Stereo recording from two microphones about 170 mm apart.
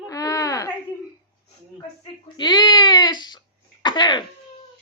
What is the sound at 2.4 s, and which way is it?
Speech, 25° left (ahead or behind).